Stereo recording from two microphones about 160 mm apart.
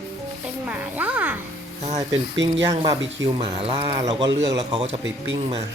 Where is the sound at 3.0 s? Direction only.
35° right (ahead or behind).